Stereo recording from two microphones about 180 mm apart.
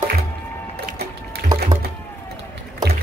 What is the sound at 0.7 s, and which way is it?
Wood, 60° right (ahead or behind).